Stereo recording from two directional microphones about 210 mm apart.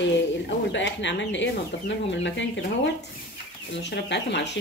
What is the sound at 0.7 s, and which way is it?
Speech, 60° left (ahead or behind).